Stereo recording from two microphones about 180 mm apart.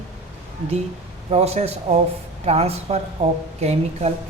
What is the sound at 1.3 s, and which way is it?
A woman's voice, 35° right (ahead or behind).